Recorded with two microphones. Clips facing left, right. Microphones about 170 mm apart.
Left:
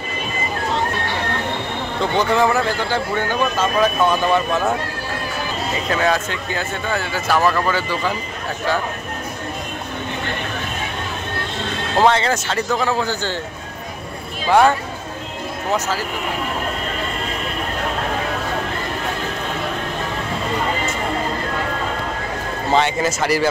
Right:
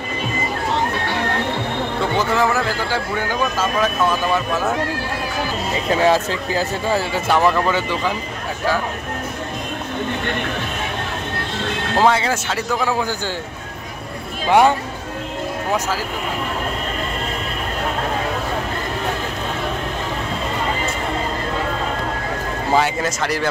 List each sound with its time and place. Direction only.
2.1 s speech: 5° right (ahead or behind)
5.9 s speech: 30° right (ahead or behind)
12.0 s speech: 5° right (ahead or behind)
14.5 s speech: 15° right (ahead or behind)
22.7 s speech: 5° right (ahead or behind)